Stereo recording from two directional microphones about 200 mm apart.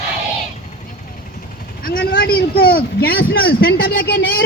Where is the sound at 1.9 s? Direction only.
45° left (ahead or behind).